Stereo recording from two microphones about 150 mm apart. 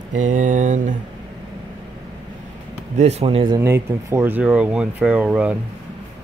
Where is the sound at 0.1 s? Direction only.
55° right (ahead or behind).